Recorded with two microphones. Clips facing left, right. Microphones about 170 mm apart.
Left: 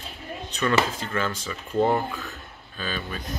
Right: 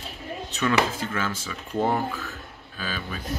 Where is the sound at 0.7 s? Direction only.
5° right (ahead or behind).